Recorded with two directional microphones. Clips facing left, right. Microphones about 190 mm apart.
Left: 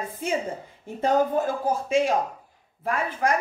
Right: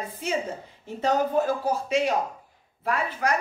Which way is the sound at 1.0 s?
50° left (ahead or behind).